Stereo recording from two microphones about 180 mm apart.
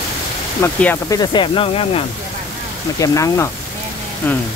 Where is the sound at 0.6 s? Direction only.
10° left (ahead or behind).